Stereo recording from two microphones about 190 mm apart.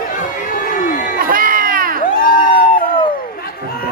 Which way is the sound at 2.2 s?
50° left (ahead or behind).